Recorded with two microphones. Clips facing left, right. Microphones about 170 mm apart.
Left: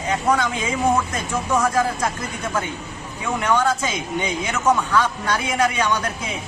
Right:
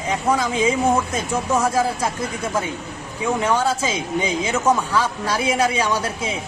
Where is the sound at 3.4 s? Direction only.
10° right (ahead or behind).